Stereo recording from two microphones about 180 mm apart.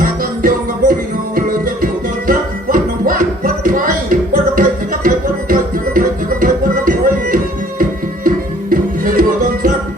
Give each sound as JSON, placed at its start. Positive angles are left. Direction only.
{"t": 0.0, "sound": "music", "side_deg": -50}
{"t": 8.7, "sound": "music", "side_deg": -50}